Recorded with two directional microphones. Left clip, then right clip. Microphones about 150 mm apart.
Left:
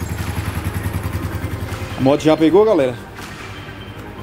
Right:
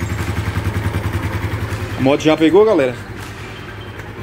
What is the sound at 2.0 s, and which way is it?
Speech, 20° left (ahead or behind).